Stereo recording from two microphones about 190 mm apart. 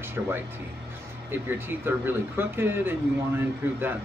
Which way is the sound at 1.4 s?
10° right (ahead or behind).